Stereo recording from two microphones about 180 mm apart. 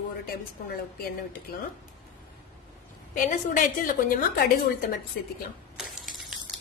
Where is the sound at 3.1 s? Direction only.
45° left (ahead or behind).